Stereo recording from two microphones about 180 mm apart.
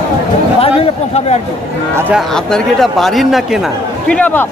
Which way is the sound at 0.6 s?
35° left (ahead or behind).